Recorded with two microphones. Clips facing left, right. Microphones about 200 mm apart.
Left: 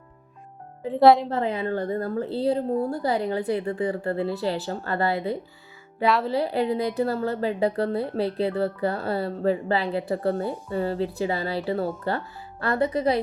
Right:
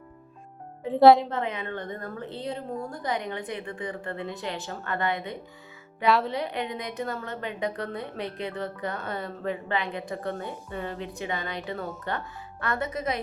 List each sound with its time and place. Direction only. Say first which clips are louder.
0.9 s a woman's voice: even; centre (ahead or behind)
1.3 s speech: left 6 dB; 35° left (ahead or behind)
6.1 s a woman's voice: even; centre (ahead or behind)
6.3 s speech: left 7 dB; 35° left (ahead or behind)